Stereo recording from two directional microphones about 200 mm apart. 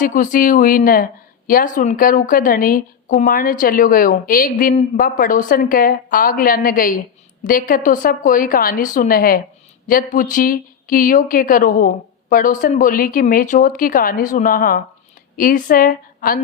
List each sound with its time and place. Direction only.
0.0 s speech: 40° left (ahead or behind)